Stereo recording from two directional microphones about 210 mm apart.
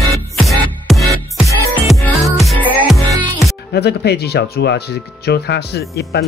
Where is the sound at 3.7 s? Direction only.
50° left (ahead or behind).